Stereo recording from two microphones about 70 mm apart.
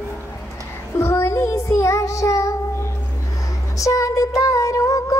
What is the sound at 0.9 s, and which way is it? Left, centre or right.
Child singing, left.